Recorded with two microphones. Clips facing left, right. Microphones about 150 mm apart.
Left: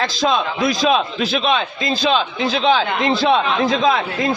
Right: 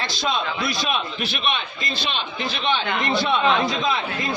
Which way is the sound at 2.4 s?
90° left.